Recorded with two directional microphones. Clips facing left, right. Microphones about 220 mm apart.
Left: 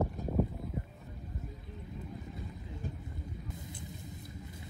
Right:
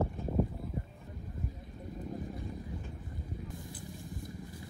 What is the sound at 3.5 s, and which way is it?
Vehicle, 20° left (ahead or behind).